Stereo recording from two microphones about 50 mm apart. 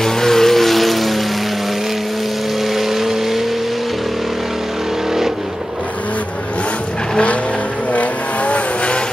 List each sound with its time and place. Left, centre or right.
0.0 s music: centre
2.9 s vehicle: centre
7.9 s vehicle: left